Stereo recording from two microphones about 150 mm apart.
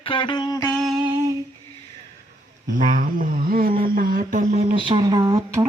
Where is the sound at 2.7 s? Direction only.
60° right (ahead or behind).